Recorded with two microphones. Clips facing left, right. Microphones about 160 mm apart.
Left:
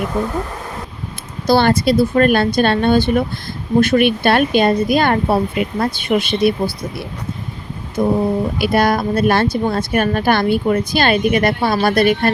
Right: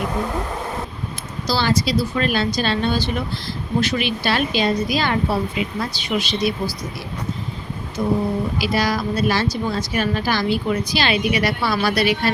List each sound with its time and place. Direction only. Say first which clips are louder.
1.5 s speech: left 7 dB; 55° left (ahead or behind)
8.0 s speech: left 5 dB; 55° left (ahead or behind)